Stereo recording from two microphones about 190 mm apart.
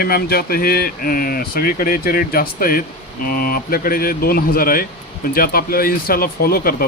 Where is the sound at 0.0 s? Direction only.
55° left (ahead or behind).